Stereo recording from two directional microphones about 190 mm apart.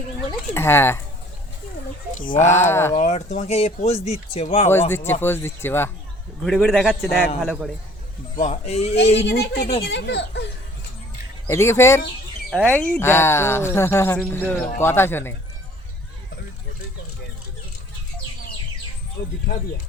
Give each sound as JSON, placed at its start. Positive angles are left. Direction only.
{"t": 0.3, "sound": "speech", "side_deg": 10}
{"t": 2.6, "sound": "speech", "side_deg": 15}
{"t": 2.9, "sound": "speech", "side_deg": 40}
{"t": 4.7, "sound": "speech", "side_deg": 10}
{"t": 6.4, "sound": "a man's voice", "side_deg": 0}
{"t": 8.4, "sound": "speech", "side_deg": 35}
{"t": 9.2, "sound": "speech", "side_deg": 55}
{"t": 9.8, "sound": "speech", "side_deg": 65}
{"t": 11.4, "sound": "speech", "side_deg": 15}